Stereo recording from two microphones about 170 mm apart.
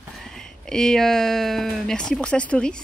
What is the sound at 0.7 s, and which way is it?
Speech, 5° left (ahead or behind).